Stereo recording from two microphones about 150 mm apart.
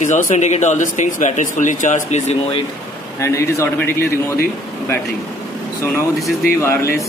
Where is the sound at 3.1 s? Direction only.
20° left (ahead or behind).